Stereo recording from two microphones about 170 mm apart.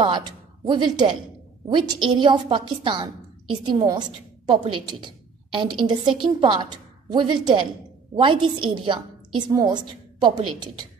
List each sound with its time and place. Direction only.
0.7 s a woman's voice: 25° right (ahead or behind)